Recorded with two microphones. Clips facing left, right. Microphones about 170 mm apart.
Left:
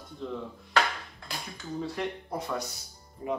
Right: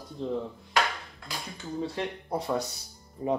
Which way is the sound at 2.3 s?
30° right (ahead or behind).